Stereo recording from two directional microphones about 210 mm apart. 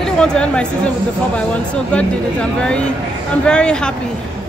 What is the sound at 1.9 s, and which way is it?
Speech, 5° left (ahead or behind).